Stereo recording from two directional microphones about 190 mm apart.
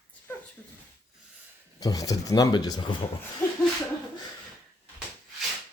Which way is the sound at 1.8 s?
20° left (ahead or behind).